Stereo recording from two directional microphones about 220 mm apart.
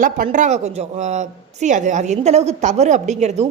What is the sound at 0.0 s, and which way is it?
A woman's voice, 35° right (ahead or behind).